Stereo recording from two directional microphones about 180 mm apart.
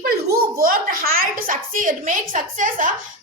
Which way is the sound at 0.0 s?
60° right (ahead or behind).